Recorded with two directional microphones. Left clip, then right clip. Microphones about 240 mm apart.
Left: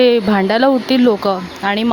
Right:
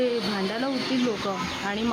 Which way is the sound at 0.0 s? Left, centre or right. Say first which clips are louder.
Left 14 dB; left.